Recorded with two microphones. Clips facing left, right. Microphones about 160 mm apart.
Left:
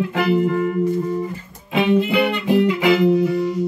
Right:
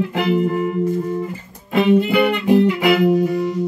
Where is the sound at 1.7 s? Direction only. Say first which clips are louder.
Right 2 dB; 50° right (ahead or behind).